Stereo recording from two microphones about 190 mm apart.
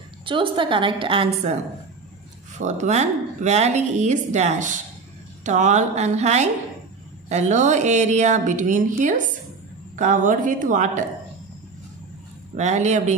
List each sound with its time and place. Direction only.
0.2 s a woman's voice: 25° right (ahead or behind)
2.6 s speech: 40° right (ahead or behind)
12.5 s speech: 40° right (ahead or behind)